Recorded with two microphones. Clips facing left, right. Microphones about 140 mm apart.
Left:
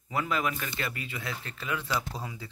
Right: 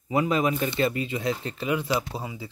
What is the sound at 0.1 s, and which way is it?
Speech, 20° right (ahead or behind).